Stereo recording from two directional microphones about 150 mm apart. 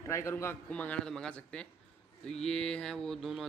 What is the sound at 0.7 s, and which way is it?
Speech, 10° left (ahead or behind).